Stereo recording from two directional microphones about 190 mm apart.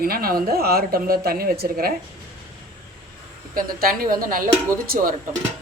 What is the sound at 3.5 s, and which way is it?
Speech, 50° right (ahead or behind).